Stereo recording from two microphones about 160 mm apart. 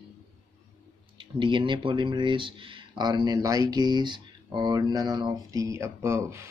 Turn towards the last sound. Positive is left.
turn(degrees=-15)  # may be behind; listen again after turning